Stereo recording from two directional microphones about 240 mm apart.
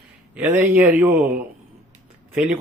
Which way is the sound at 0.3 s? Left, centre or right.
Centre.